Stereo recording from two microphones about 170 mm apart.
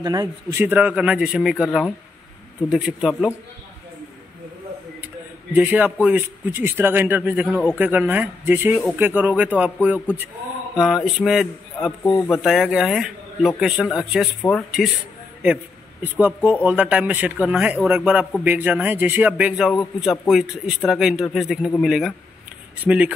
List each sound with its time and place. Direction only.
0.0 s speech: 20° right (ahead or behind); by 3.3 s centre (ahead or behind)
5.5 s speech: 10° right (ahead or behind)
12.0 s speech: 15° left (ahead or behind)
12.3 s speech: centre (ahead or behind)